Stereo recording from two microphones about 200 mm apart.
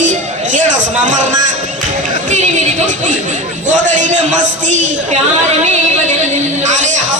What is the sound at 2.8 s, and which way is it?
A man's voice, 40° right (ahead or behind).